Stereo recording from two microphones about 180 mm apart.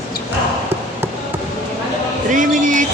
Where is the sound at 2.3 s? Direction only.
45° right (ahead or behind).